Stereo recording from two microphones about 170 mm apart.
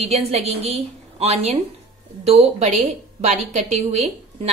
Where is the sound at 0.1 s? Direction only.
35° right (ahead or behind).